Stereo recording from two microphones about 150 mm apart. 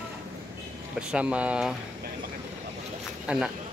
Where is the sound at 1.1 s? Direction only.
10° right (ahead or behind).